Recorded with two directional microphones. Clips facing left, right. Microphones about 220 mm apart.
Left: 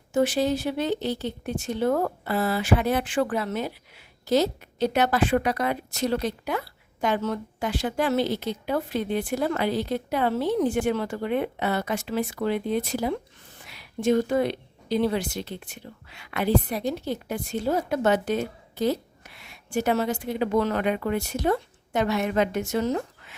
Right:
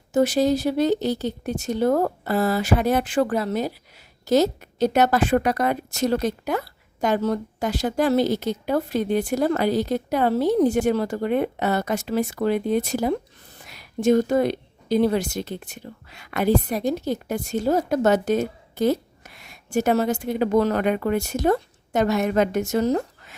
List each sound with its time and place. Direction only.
0.1 s a woman's voice: 40° right (ahead or behind)